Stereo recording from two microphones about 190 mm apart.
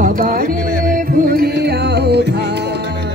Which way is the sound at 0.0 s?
45° right (ahead or behind).